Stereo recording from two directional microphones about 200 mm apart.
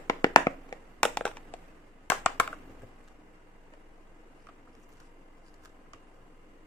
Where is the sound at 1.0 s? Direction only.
5° left (ahead or behind).